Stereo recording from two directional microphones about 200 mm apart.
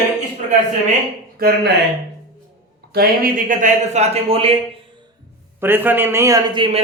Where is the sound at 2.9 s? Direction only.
50° right (ahead or behind); by 5.0 s 30° right (ahead or behind).